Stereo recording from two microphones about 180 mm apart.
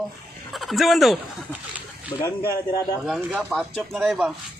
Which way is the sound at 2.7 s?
25° left (ahead or behind).